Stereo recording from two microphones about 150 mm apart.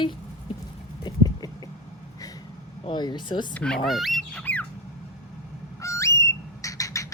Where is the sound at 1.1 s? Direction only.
25° left (ahead or behind).